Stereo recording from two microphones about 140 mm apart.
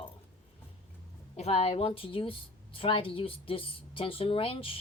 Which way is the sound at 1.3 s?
50° left (ahead or behind).